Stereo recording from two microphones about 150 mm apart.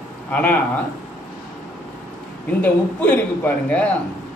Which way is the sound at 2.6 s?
10° left (ahead or behind).